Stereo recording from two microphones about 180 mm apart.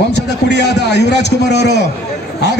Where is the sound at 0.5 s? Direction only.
70° left (ahead or behind).